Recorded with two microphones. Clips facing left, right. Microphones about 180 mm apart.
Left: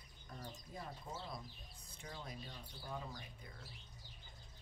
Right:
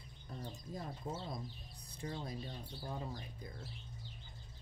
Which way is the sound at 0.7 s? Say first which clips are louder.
Right 6 dB; 35° right (ahead or behind).